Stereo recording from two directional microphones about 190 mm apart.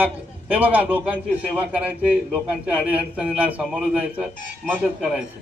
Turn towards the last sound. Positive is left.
turn(degrees=-5)  # may be behind; listen again after turning